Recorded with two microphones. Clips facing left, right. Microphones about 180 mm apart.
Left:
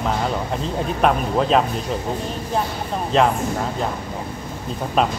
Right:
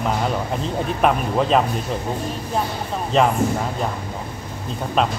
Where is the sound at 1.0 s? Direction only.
Centre (ahead or behind).